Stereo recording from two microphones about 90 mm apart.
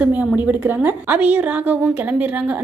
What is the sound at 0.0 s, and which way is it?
A woman's voice, 15° right (ahead or behind).